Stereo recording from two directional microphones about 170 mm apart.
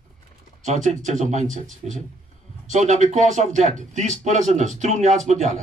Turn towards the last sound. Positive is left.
turn(degrees=-40)  # may be behind; listen again after turning